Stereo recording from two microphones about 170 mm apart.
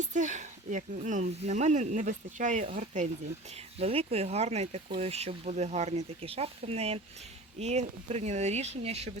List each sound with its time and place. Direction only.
0.0 s speech: 45° right (ahead or behind)